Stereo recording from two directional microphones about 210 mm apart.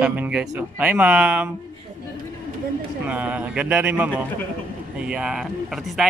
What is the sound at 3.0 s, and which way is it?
Speech, 5° right (ahead or behind).